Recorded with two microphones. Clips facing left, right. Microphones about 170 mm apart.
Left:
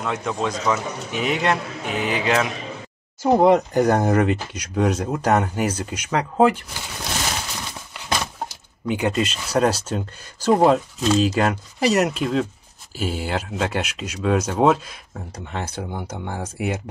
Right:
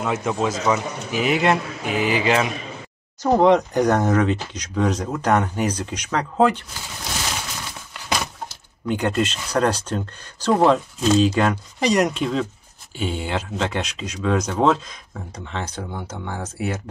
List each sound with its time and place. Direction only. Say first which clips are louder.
0.0 s speech: right 2 dB; 5° right (ahead or behind)
8.8 s speech: even; 10° left (ahead or behind)